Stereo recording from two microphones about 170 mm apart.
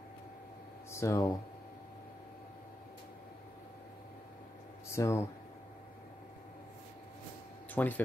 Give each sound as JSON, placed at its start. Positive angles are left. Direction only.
{"t": 0.9, "sound": "speech", "side_deg": 15}
{"t": 4.9, "sound": "speech", "side_deg": 15}
{"t": 7.7, "sound": "speech", "side_deg": 10}